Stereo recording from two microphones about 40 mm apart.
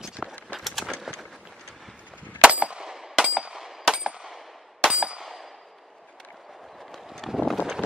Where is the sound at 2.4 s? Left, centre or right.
Right.